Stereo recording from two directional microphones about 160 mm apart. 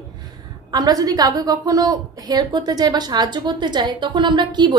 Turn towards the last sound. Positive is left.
turn(degrees=-30)  # may be behind; listen again after turning